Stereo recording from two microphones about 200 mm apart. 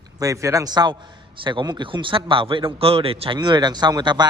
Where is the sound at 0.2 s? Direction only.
15° right (ahead or behind).